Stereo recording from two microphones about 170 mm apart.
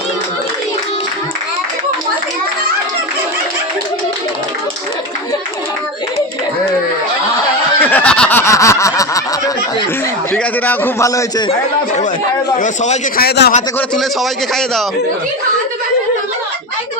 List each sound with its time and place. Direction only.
7.8 s a sound: 10° left (ahead or behind)
10.3 s a man's voice: 10° left (ahead or behind)
12.5 s a man's voice: 45° left (ahead or behind)
13.1 s a man's voice: 70° left (ahead or behind)
13.7 s a man's voice: centre (ahead or behind)